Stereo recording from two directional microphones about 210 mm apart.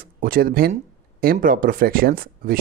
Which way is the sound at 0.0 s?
45° right (ahead or behind).